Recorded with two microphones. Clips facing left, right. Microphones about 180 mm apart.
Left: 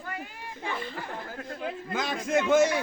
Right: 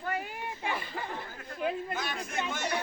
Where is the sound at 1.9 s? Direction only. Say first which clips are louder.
Left 8 dB; 90° left.